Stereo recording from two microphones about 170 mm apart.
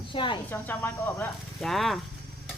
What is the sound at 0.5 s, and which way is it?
Speech, 10° left (ahead or behind).